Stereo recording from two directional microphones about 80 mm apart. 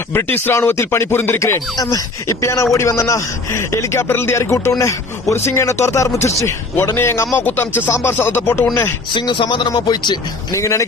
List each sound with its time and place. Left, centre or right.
0.1 s speech: left
1.5 s speech: left
9.1 s a man's voice: left
10.5 s speech: left